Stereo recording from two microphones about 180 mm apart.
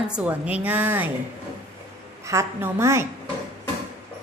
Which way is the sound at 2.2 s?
15° right (ahead or behind).